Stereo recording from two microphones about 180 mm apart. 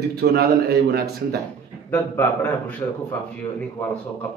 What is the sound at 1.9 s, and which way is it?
Speech, 10° left (ahead or behind).